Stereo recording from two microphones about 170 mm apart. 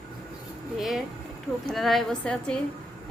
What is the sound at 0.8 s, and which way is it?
A woman's voice, centre (ahead or behind).